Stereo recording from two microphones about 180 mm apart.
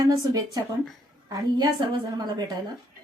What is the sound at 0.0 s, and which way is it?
A woman's voice, 20° right (ahead or behind).